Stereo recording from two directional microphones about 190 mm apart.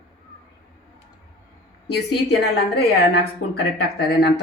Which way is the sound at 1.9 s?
60° left (ahead or behind).